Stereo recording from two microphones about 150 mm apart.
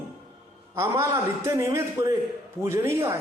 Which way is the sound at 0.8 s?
20° right (ahead or behind).